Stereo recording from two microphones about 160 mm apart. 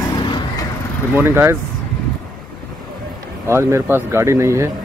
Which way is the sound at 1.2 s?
15° right (ahead or behind).